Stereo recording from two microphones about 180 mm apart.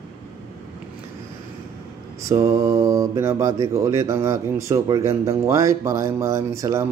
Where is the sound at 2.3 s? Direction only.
15° right (ahead or behind).